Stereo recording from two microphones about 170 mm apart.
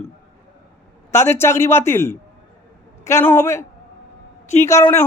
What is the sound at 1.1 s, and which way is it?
Speech, 15° left (ahead or behind).